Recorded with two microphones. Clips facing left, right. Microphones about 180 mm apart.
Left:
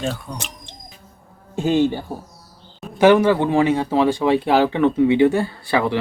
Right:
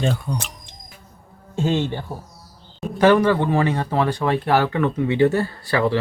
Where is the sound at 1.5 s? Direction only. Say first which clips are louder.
Left 4 dB; 10° left (ahead or behind).